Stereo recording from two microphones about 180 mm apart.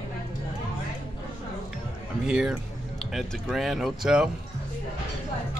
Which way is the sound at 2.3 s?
5° right (ahead or behind).